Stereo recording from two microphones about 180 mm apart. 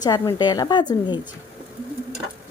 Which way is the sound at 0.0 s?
20° left (ahead or behind).